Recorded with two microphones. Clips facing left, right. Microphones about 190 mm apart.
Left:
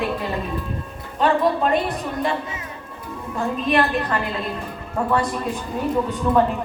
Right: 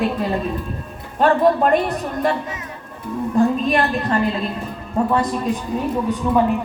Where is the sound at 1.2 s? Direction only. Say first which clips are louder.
Right 4 dB; 50° right (ahead or behind).